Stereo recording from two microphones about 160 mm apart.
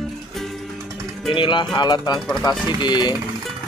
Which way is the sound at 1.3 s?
30° left (ahead or behind).